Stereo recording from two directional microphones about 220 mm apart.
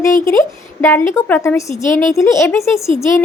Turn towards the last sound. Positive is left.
turn(degrees=15)  # may be behind; listen again after turning